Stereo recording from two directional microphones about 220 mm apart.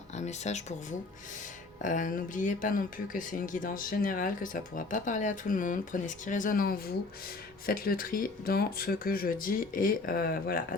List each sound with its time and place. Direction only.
0.1 s speech: 30° left (ahead or behind)